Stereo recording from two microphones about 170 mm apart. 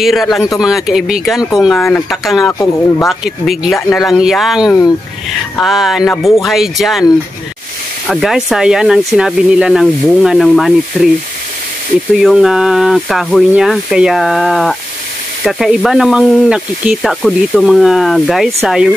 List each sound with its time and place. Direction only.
0.0 s speech: centre (ahead or behind)
1.8 s speech: 10° left (ahead or behind)
2.0 s speech: centre (ahead or behind)
4.6 s speech: 20° left (ahead or behind)
5.6 s speech: centre (ahead or behind)
8.1 s speech: centre (ahead or behind)
12.2 s speech: 5° right (ahead or behind)